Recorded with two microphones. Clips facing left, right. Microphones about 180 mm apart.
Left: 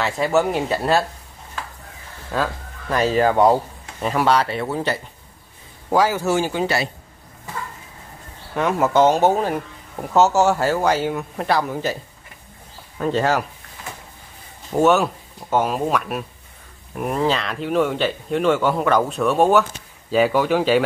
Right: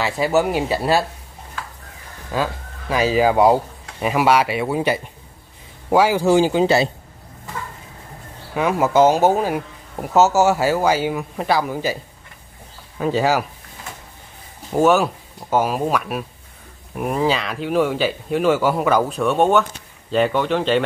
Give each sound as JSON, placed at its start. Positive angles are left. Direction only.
{"t": 0.0, "sound": "speech", "side_deg": -5}
{"t": 2.3, "sound": "speech", "side_deg": -5}
{"t": 6.6, "sound": "speech", "side_deg": -25}
{"t": 8.5, "sound": "speech", "side_deg": -5}
{"t": 13.0, "sound": "speech", "side_deg": -5}
{"t": 14.7, "sound": "speech", "side_deg": 0}